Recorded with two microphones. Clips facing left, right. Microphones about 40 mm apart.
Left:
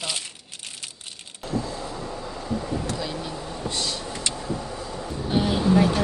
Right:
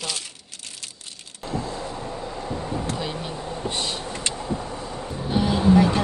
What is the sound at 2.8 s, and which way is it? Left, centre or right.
Vehicle, right.